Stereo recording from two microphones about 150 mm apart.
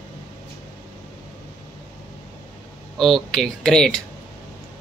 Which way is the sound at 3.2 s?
5° left (ahead or behind).